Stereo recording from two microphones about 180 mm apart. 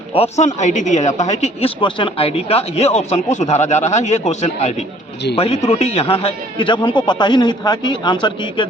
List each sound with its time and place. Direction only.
0.1 s speech: 35° left (ahead or behind)
1.8 s a man's voice: 30° left (ahead or behind)